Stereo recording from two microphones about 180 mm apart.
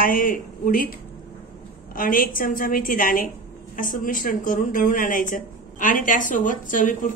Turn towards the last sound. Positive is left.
turn(degrees=45)  # may be behind; listen again after turning